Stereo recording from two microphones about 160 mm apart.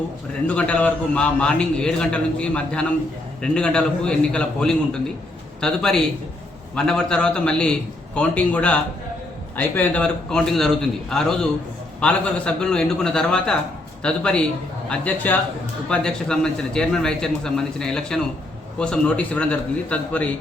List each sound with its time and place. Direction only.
0.4 s a man's voice: 10° left (ahead or behind)